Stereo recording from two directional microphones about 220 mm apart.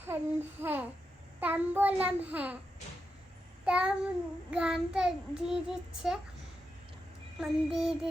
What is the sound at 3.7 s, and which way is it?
Child singing, 5° right (ahead or behind).